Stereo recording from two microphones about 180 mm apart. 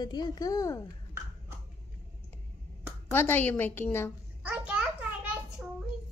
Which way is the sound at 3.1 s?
10° left (ahead or behind).